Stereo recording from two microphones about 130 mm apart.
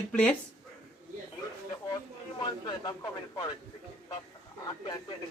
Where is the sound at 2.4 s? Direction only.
30° left (ahead or behind).